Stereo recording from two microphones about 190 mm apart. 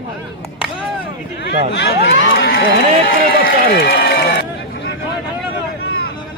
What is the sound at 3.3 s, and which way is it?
Run, 55° left (ahead or behind).